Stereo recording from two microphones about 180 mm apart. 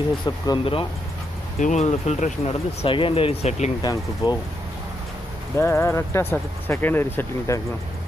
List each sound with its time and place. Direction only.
0.5 s speech: 30° left (ahead or behind)
1.6 s speech: 40° left (ahead or behind)
3.8 s speech: 20° left (ahead or behind)
5.6 s speech: 15° left (ahead or behind)